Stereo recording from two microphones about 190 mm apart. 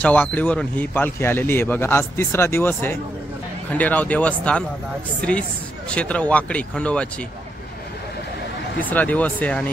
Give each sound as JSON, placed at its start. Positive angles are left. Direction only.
{"t": 0.0, "sound": "speech", "side_deg": 10}
{"t": 5.9, "sound": "speech", "side_deg": 5}
{"t": 8.7, "sound": "speech", "side_deg": 10}